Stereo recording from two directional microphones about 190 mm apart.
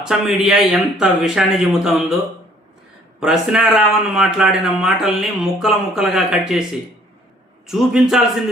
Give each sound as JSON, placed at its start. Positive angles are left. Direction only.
{"t": 0.0, "sound": "speech", "side_deg": 0}
{"t": 3.2, "sound": "speech", "side_deg": -5}
{"t": 7.7, "sound": "speech", "side_deg": -5}